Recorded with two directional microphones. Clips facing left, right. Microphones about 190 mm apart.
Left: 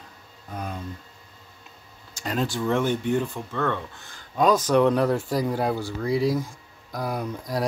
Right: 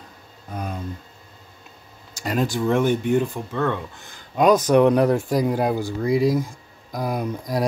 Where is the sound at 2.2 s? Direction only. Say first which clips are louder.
Right 4 dB; 10° right (ahead or behind).